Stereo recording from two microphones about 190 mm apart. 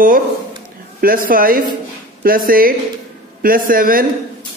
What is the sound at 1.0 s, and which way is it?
Speech, 50° right (ahead or behind).